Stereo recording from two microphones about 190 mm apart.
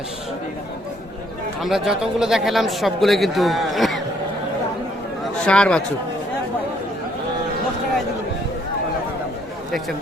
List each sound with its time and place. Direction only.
1.6 s speech: centre (ahead or behind)
5.5 s speech: 5° left (ahead or behind)